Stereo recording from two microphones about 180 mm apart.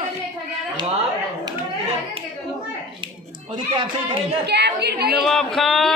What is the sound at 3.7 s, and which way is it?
Speech, 25° right (ahead or behind).